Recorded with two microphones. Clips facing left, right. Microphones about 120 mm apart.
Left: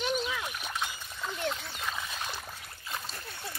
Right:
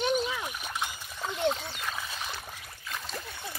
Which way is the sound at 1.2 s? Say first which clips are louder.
Right 5 dB; 20° right (ahead or behind).